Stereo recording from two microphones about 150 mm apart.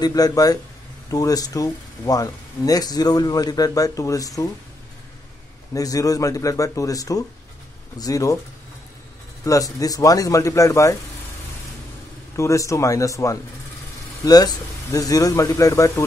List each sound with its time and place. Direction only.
0.0 s speech: 25° left (ahead or behind)
5.8 s speech: 25° left (ahead or behind)
9.4 s speech: 25° left (ahead or behind)
12.4 s speech: 20° left (ahead or behind)